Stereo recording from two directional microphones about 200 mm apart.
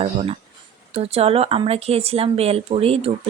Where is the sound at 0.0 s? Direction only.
30° right (ahead or behind).